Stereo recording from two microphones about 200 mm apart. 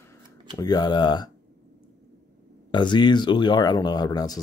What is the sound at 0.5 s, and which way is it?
Speech, 20° left (ahead or behind).